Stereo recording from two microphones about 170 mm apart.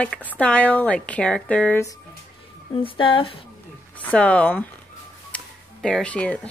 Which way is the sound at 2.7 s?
30° left (ahead or behind).